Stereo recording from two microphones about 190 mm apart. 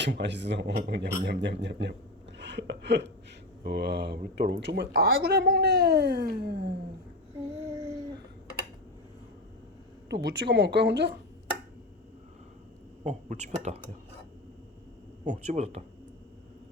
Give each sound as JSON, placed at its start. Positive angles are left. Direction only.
{"t": 0.0, "sound": "a woman's voice", "side_deg": -70}
{"t": 2.4, "sound": "a sound", "side_deg": -65}
{"t": 3.6, "sound": "a woman's voice", "side_deg": -60}
{"t": 10.1, "sound": "a woman's voice", "side_deg": -65}
{"t": 13.1, "sound": "speech", "side_deg": -40}
{"t": 15.2, "sound": "speech", "side_deg": -40}